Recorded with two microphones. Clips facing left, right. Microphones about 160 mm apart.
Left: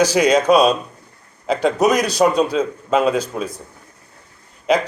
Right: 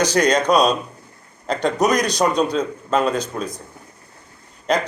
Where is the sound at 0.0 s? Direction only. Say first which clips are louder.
Left 3 dB; 5° left (ahead or behind).